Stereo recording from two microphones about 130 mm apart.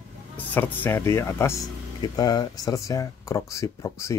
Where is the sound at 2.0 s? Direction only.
30° left (ahead or behind).